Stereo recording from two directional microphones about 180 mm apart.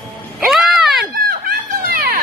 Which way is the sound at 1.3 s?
55° right (ahead or behind).